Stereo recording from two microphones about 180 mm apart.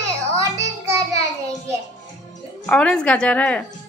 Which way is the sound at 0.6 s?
15° right (ahead or behind).